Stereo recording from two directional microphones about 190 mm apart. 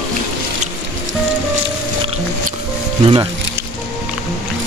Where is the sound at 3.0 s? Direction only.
25° right (ahead or behind).